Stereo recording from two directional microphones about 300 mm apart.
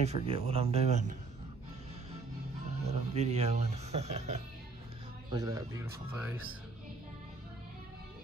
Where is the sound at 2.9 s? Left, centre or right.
Right.